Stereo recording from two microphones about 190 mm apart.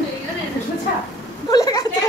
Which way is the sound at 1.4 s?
20° left (ahead or behind).